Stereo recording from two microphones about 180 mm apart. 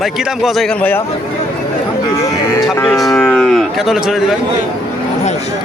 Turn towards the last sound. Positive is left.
turn(degrees=0)  # may be behind; listen again after turning